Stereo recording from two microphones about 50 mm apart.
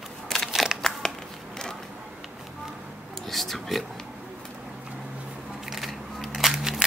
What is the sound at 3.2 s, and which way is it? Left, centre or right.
Whispering, centre.